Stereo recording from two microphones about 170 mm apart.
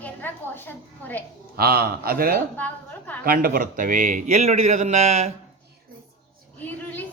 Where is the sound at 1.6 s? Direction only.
65° right (ahead or behind).